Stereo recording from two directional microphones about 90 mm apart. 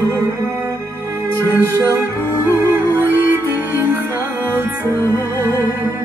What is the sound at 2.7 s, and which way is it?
Music, 20° right (ahead or behind).